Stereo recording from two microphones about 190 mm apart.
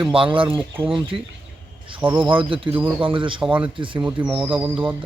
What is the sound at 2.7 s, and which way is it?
Speech, 10° right (ahead or behind).